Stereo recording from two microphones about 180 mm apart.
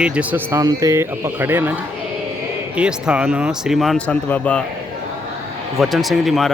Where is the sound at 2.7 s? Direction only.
5° right (ahead or behind).